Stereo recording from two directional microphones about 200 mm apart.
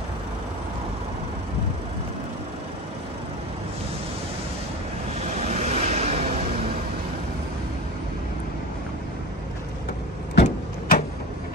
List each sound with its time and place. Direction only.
5.5 s vehicle: 30° right (ahead or behind)
10.4 s vehicle: 45° left (ahead or behind)